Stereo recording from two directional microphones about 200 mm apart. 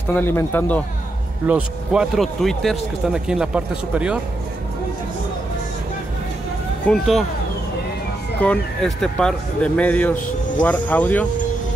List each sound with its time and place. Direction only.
0.1 s speech: 10° left (ahead or behind)
1.5 s speech: 5° right (ahead or behind)
6.9 s speech: centre (ahead or behind)
8.4 s speech: 5° left (ahead or behind)